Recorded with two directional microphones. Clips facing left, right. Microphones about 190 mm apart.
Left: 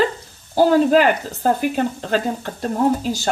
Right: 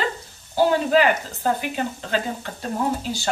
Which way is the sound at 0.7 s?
40° left (ahead or behind).